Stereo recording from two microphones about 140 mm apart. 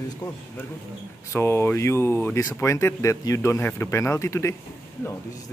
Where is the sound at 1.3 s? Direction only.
20° left (ahead or behind).